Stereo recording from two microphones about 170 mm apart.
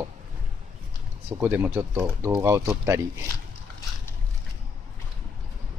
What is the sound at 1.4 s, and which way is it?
Speech, 10° right (ahead or behind).